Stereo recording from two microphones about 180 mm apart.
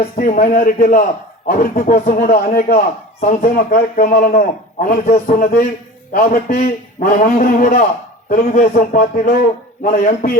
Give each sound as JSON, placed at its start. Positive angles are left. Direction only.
{"t": 0.2, "sound": "a man's voice", "side_deg": 50}